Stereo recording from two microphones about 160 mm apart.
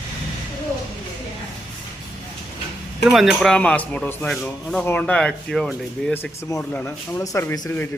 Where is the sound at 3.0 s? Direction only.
Centre (ahead or behind).